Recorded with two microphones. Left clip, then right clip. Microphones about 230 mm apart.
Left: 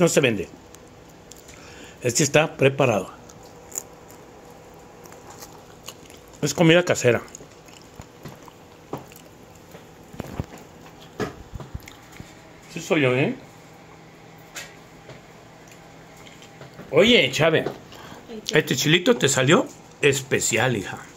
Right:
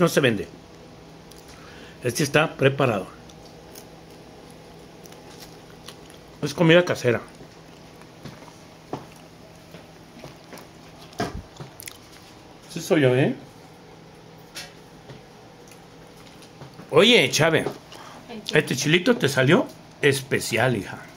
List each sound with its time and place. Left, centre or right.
0.0 s speech: centre
2.0 s speech: centre
6.4 s speech: centre
12.7 s speech: centre
16.9 s speech: right
17.4 s speech: centre
18.4 s speech: centre